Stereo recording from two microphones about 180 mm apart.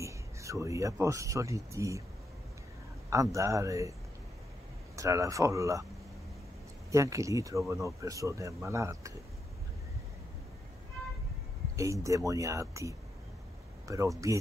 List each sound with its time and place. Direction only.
0.0 s speech: 15° right (ahead or behind)
3.1 s speech: 15° right (ahead or behind)
4.9 s speech: 15° right (ahead or behind)
6.9 s speech: 15° right (ahead or behind)
11.7 s speech: 15° right (ahead or behind)